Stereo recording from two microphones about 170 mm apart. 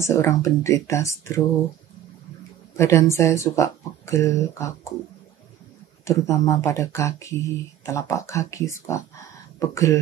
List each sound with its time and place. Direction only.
0.0 s speech: 15° left (ahead or behind)
2.7 s speech: 15° left (ahead or behind)
6.0 s speech: 20° left (ahead or behind)